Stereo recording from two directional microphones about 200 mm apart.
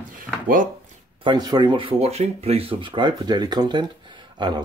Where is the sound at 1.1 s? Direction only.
20° right (ahead or behind).